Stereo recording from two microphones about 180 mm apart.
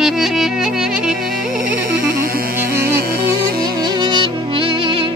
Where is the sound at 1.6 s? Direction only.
50° right (ahead or behind).